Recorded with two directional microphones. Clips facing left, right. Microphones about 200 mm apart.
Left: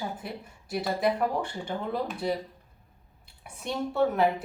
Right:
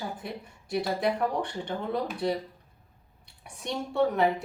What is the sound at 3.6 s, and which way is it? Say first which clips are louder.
Speech: even; centre (ahead or behind).